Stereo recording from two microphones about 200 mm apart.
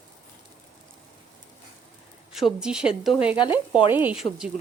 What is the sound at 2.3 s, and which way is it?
A woman's voice, centre (ahead or behind).